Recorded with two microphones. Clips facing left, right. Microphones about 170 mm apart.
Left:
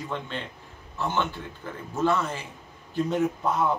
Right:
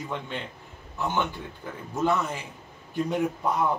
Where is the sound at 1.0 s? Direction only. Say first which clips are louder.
Even; 15° right (ahead or behind).